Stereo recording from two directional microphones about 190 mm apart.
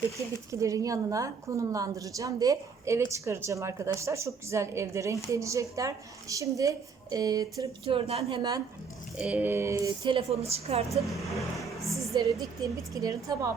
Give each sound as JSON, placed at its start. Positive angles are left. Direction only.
{"t": 0.5, "sound": "a woman's voice", "side_deg": -15}
{"t": 9.1, "sound": "a woman's voice", "side_deg": -5}
{"t": 10.0, "sound": "a woman's voice", "side_deg": -25}
{"t": 11.0, "sound": "speech", "side_deg": 0}
{"t": 11.9, "sound": "a woman's voice", "side_deg": -20}